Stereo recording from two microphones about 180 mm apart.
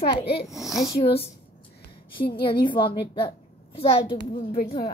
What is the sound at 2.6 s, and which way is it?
A woman's voice, 25° left (ahead or behind).